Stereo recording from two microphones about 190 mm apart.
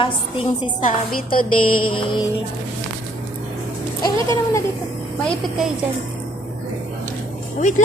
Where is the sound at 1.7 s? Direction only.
25° left (ahead or behind).